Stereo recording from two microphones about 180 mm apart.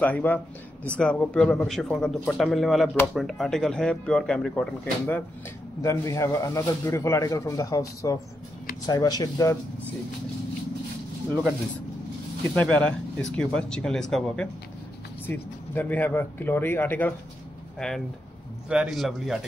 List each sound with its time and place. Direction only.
0.0 s a man's voice: 10° left (ahead or behind)
5.8 s a man's voice: 15° left (ahead or behind)
12.4 s a man's voice: 10° left (ahead or behind)